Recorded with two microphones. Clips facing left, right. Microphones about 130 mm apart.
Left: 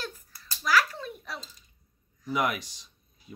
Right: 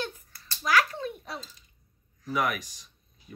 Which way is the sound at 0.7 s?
25° right (ahead or behind).